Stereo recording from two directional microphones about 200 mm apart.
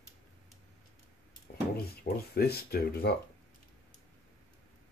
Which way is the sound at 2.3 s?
50° left (ahead or behind).